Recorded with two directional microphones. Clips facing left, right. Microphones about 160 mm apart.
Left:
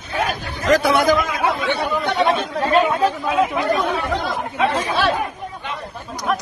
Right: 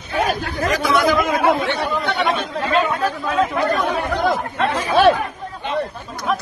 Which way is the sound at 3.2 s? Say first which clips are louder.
Even; 10° left (ahead or behind).